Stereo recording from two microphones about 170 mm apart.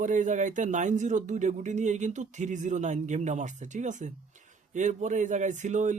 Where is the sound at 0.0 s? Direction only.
45° right (ahead or behind).